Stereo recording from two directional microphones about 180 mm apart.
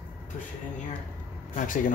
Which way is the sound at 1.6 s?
45° left (ahead or behind).